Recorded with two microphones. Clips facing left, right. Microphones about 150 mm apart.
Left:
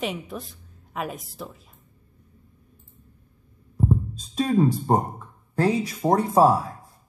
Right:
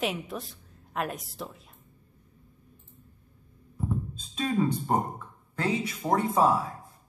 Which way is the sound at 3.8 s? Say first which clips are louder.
Left 8 dB; 40° left (ahead or behind).